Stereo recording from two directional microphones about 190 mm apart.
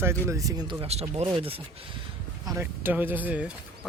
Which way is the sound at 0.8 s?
35° right (ahead or behind).